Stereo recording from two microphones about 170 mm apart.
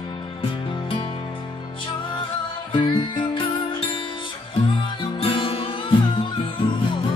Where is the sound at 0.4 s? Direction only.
30° left (ahead or behind).